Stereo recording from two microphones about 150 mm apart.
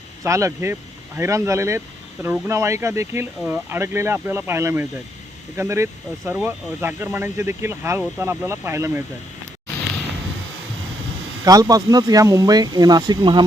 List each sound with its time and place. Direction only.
0.2 s speech: 20° right (ahead or behind)
11.4 s speech: 25° right (ahead or behind)